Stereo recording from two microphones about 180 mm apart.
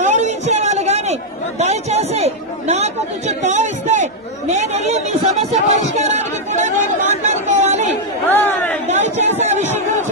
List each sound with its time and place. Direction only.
0.0 s a sound: 40° right (ahead or behind)
1.6 s chatter: 35° right (ahead or behind)
8.3 s chatter: 10° left (ahead or behind)
8.8 s chatter: 40° right (ahead or behind)